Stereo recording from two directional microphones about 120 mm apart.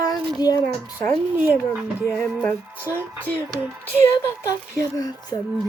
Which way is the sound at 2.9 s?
25° left (ahead or behind).